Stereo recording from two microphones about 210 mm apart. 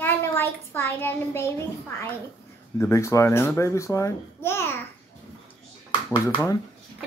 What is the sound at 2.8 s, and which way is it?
A child's voice, 15° left (ahead or behind).